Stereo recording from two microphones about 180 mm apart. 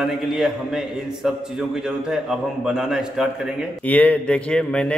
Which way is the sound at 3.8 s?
10° left (ahead or behind).